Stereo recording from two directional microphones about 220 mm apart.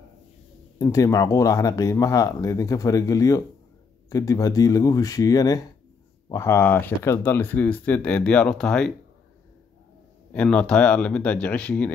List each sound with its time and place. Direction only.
0.7 s speech: 15° left (ahead or behind)
10.3 s speech: 5° left (ahead or behind)